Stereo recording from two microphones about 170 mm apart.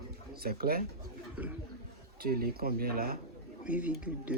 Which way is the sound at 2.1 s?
65° right (ahead or behind).